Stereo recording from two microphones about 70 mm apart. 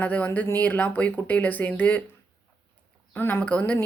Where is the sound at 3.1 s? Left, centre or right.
Left.